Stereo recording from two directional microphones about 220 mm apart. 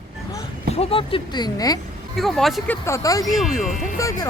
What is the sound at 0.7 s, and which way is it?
Speech, 25° left (ahead or behind).